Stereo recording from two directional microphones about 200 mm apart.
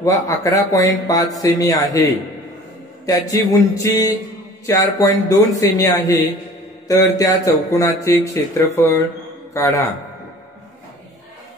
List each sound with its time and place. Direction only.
0.0 s a man's voice: 15° left (ahead or behind)